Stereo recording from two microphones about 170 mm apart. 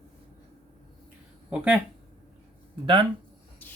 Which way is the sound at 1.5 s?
10° right (ahead or behind).